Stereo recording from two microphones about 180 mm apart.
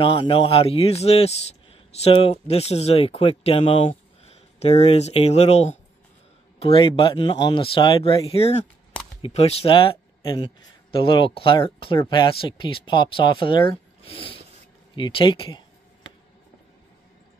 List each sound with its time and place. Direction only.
0.0 s speech: 30° left (ahead or behind)